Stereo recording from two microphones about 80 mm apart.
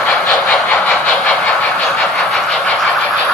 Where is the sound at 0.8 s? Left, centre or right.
Centre.